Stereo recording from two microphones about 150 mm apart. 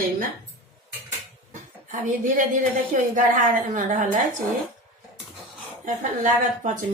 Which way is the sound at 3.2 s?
60° right (ahead or behind).